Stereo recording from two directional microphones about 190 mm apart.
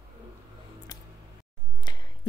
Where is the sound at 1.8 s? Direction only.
20° left (ahead or behind).